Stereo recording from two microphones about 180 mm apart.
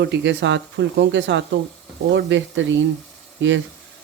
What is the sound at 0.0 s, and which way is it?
Speech, 75° right (ahead or behind).